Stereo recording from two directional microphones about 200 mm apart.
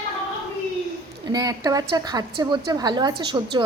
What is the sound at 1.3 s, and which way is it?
A woman's voice, 20° right (ahead or behind).